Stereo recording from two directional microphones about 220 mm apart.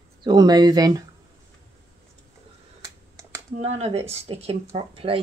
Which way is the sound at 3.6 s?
30° right (ahead or behind).